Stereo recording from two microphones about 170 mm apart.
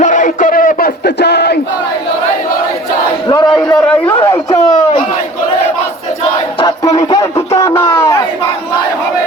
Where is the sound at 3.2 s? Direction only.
25° left (ahead or behind).